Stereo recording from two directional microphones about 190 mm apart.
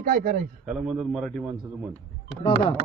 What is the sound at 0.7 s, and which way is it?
Speech, 5° right (ahead or behind).